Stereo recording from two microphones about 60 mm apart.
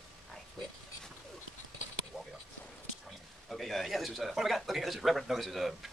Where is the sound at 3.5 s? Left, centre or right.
Centre.